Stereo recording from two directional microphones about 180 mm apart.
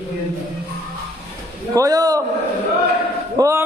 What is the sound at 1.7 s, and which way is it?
Speech, 20° right (ahead or behind).